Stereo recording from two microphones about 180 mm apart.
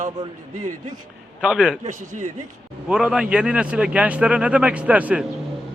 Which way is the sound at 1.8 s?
45° right (ahead or behind).